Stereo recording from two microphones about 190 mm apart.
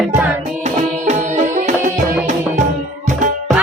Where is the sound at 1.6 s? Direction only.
45° right (ahead or behind).